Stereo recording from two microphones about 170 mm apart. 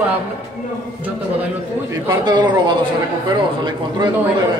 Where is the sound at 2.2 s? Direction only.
25° right (ahead or behind).